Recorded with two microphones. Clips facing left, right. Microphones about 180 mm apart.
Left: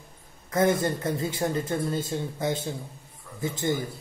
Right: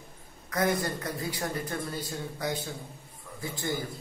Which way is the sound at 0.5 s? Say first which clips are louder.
Left 5 dB; 25° left (ahead or behind).